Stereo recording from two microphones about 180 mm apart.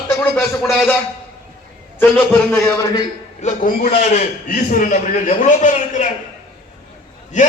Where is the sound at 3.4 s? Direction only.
45° left (ahead or behind).